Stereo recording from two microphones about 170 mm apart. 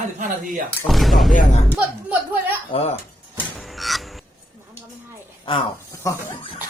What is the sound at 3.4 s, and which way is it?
Frog, centre (ahead or behind).